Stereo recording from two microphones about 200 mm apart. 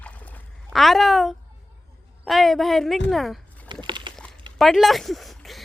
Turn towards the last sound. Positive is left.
turn(degrees=0)  # may be behind; listen again after turning